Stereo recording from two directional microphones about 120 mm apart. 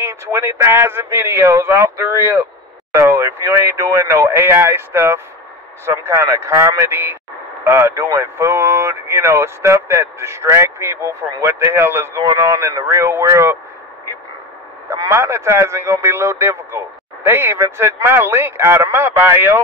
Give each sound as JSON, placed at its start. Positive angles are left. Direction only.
{"t": 0.0, "sound": "speech", "side_deg": -20}
{"t": 15.0, "sound": "speech", "side_deg": -25}